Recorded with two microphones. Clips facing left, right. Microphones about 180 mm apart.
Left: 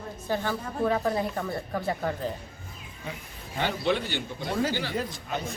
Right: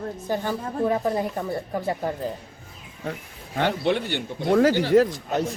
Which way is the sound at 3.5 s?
60° right (ahead or behind).